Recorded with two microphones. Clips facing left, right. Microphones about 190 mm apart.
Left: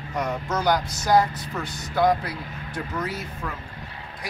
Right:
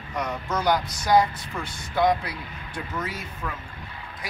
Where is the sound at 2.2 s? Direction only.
40° left (ahead or behind).